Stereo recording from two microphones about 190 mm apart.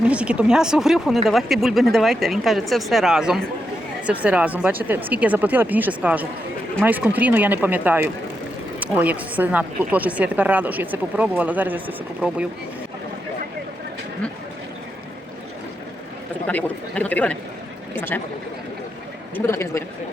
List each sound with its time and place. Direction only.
0.0 s a woman's voice: 5° right (ahead or behind)
16.5 s speech: 10° left (ahead or behind)
19.5 s speech: 15° left (ahead or behind)